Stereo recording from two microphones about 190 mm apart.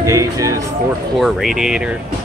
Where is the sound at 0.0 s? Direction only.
15° right (ahead or behind).